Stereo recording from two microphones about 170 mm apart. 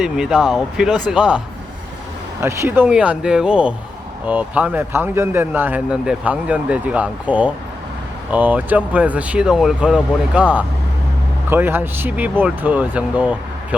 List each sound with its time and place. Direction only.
0.0 s speech: centre (ahead or behind)
2.4 s a man's voice: 15° right (ahead or behind)